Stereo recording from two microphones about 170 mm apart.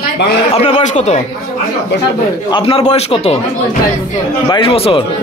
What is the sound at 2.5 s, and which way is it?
Speech, 30° left (ahead or behind).